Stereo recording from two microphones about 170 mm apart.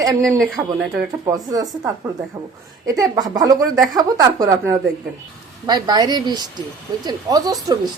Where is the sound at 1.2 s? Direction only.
20° right (ahead or behind).